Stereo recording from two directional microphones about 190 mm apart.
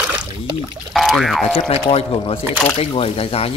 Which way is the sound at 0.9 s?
Centre (ahead or behind).